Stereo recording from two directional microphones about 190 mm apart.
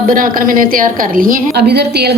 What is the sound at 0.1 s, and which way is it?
A woman's voice, 50° right (ahead or behind).